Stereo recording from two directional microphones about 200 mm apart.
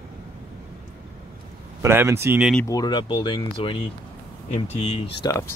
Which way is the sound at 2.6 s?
20° left (ahead or behind).